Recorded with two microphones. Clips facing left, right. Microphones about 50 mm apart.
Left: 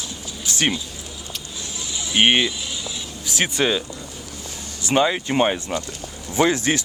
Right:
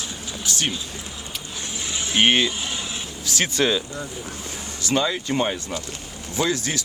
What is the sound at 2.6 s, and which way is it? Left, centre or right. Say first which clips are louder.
Vehicle: right 1 dB; right.